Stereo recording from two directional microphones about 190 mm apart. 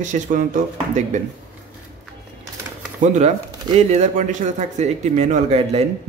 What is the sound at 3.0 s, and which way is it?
Speech, 35° right (ahead or behind).